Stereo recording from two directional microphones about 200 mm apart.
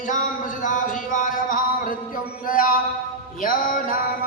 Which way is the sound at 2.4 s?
45° left (ahead or behind).